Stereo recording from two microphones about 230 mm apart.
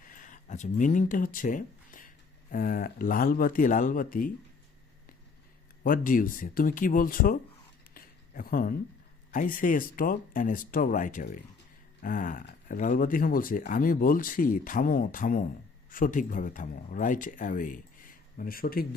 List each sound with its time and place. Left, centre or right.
0.0 s speech: left
5.8 s speech: left
7.9 s a sound: left
9.3 s speech: left